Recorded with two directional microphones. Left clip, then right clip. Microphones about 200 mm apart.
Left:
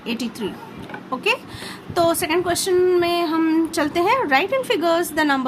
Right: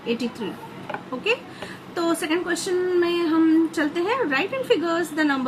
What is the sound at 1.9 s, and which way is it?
Speech, 60° left (ahead or behind).